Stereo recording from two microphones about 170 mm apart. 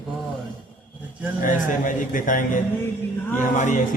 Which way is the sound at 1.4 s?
50° left (ahead or behind).